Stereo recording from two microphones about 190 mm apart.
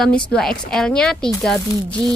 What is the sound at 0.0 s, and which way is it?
A woman's voice, 5° left (ahead or behind).